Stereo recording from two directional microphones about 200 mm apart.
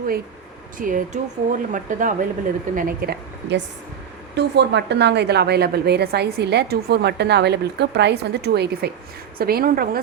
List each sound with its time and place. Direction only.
0.8 s a woman's voice: 40° right (ahead or behind)